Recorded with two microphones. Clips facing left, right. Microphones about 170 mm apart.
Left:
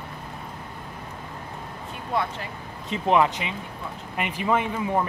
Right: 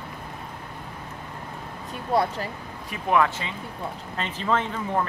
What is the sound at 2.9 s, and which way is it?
Speech, 20° left (ahead or behind).